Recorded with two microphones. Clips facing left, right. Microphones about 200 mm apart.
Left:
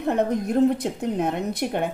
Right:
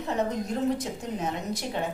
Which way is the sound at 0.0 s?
60° left (ahead or behind).